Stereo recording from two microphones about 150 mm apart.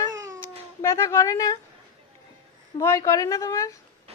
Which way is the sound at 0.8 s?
20° left (ahead or behind).